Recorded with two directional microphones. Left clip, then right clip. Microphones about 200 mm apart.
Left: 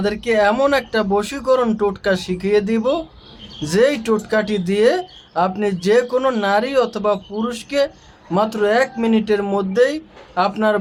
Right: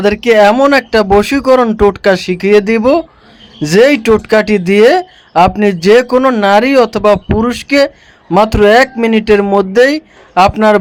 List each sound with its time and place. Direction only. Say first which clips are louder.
0.0 s speech: right 10 dB; 30° right (ahead or behind)